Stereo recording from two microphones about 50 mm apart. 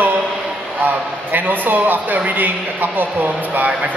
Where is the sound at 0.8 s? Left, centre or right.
Right.